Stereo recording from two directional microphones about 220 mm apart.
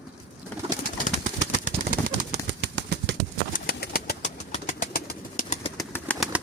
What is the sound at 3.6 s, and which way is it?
Pigeon, 45° left (ahead or behind).